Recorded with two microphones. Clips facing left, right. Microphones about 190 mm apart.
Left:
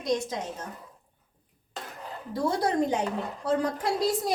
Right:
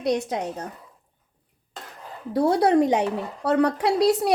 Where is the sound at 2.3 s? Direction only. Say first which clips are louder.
Right 8 dB; 65° right (ahead or behind).